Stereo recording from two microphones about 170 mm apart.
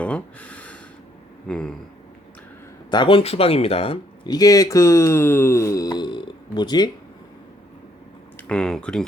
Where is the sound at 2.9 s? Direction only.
30° left (ahead or behind).